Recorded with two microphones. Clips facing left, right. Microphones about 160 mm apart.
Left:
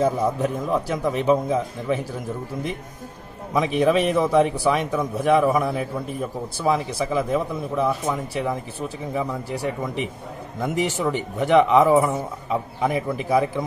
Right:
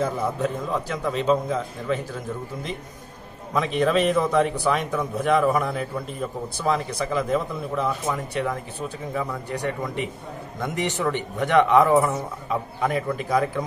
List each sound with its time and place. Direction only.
0.0 s a man's voice: 10° left (ahead or behind)
3.5 s a man's voice: 10° left (ahead or behind)